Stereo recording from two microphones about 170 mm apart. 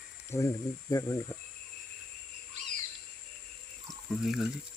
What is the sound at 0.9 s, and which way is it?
Speech, 20° left (ahead or behind).